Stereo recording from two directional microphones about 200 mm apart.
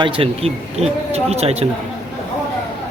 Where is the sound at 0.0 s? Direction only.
30° right (ahead or behind).